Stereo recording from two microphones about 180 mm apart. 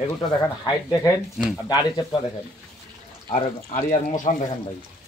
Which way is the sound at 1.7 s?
20° left (ahead or behind).